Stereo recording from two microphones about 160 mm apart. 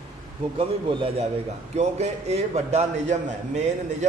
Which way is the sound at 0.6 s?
35° right (ahead or behind).